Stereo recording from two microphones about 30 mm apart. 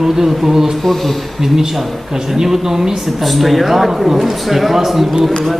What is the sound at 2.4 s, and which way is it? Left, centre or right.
Speech, centre.